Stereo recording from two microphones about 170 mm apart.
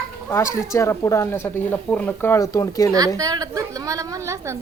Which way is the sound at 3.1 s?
20° right (ahead or behind).